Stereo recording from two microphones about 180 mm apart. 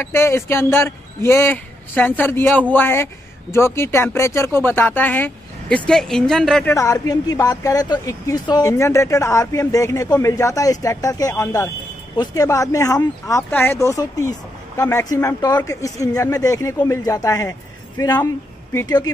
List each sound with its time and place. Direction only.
0.0 s a woman's voice: 15° left (ahead or behind)
6.7 s a woman's voice: 15° left (ahead or behind)